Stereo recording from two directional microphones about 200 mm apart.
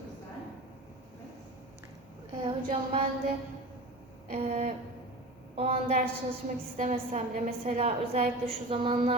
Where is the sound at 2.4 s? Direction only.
25° right (ahead or behind).